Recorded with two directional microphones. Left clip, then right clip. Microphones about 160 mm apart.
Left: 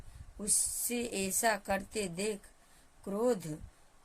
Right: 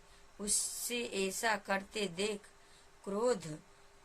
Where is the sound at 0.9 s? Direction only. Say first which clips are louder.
Even; 60° left (ahead or behind).